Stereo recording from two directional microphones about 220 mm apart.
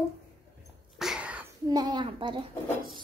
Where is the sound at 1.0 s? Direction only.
5° right (ahead or behind).